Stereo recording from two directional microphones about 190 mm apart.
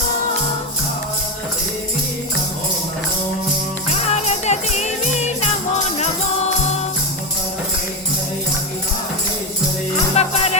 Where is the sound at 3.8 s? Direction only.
35° left (ahead or behind).